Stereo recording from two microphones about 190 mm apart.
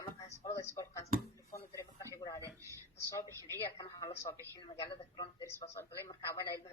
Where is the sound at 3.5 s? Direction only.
20° left (ahead or behind).